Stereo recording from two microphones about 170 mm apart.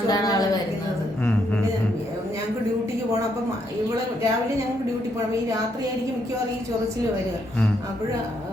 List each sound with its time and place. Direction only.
0.1 s a woman's voice: 20° left (ahead or behind)